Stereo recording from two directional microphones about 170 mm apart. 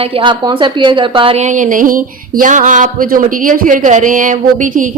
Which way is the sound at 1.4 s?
50° right (ahead or behind).